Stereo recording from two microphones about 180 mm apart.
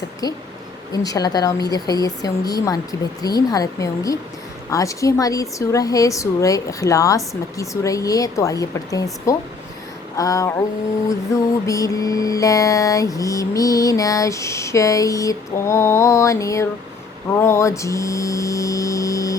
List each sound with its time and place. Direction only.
0.9 s speech: 20° left (ahead or behind)
4.7 s mantra: 15° left (ahead or behind)
10.2 s speech: 20° left (ahead or behind)
11.6 s mantra: 20° left (ahead or behind)